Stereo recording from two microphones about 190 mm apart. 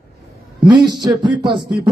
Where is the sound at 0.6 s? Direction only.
20° right (ahead or behind).